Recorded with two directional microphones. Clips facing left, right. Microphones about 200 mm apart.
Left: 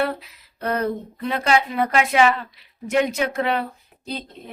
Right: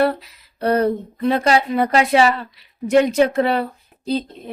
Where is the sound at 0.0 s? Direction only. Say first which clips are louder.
Right 6 dB; 35° right (ahead or behind).